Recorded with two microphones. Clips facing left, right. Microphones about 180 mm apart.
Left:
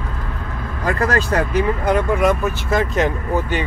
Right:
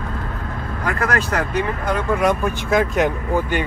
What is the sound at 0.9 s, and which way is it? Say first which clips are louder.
Speech: left 3 dB; 30° left (ahead or behind).